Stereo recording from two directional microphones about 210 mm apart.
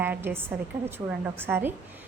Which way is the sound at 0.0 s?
10° right (ahead or behind).